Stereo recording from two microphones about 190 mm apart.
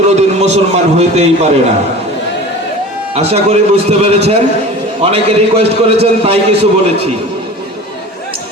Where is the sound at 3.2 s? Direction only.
35° right (ahead or behind).